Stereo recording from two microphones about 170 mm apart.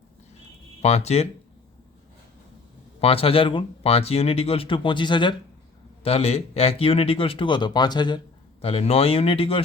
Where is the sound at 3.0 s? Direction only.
35° left (ahead or behind).